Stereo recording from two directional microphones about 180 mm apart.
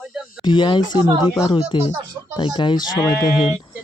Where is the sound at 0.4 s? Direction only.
25° left (ahead or behind).